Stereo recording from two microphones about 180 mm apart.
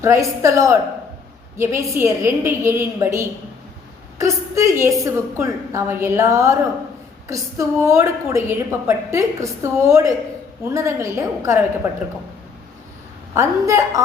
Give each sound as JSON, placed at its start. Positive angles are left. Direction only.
{"t": 0.0, "sound": "a woman's voice", "side_deg": -15}
{"t": 13.3, "sound": "a woman's voice", "side_deg": -15}